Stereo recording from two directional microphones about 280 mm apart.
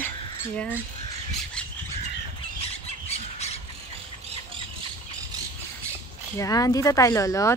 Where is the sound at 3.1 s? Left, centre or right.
Left.